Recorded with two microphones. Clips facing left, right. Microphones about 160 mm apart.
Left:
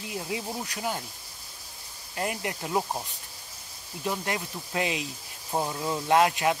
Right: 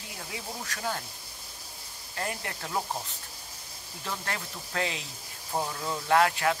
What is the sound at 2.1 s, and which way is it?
Speech, 20° left (ahead or behind).